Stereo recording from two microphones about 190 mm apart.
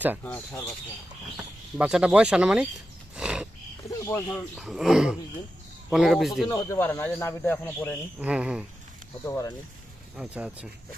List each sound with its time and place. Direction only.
0.3 s speech: 10° left (ahead or behind)
1.8 s speech: 5° right (ahead or behind)
3.2 s horse: 5° right (ahead or behind)
3.8 s snake: 15° left (ahead or behind)
4.5 s speech: centre (ahead or behind)
6.5 s speech: 20° left (ahead or behind)
8.2 s speech: 5° right (ahead or behind)
9.2 s speech: 15° left (ahead or behind)
10.2 s speech: 5° right (ahead or behind)